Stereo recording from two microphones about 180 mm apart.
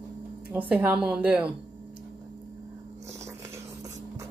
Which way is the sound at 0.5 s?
10° right (ahead or behind).